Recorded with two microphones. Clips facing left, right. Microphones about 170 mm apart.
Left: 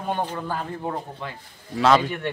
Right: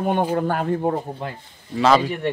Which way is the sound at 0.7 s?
40° right (ahead or behind).